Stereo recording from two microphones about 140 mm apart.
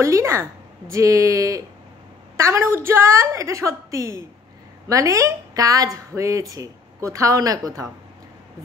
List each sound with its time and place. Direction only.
0.0 s a woman's voice: 20° right (ahead or behind)